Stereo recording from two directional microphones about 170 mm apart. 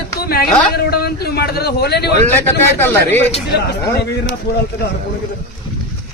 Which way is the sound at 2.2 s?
10° left (ahead or behind).